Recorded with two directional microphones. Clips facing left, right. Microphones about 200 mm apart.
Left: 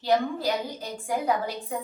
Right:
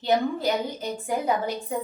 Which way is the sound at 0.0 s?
20° right (ahead or behind).